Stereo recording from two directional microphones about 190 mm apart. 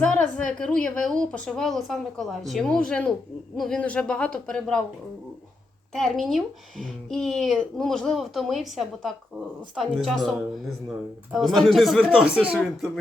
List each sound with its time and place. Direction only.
0.0 s speech: 5° left (ahead or behind)
5.9 s speech: centre (ahead or behind)